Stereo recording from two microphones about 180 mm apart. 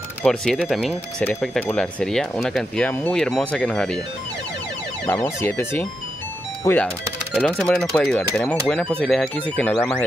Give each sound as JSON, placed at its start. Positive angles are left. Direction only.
{"t": 0.2, "sound": "speech", "side_deg": 5}
{"t": 5.0, "sound": "speech", "side_deg": 15}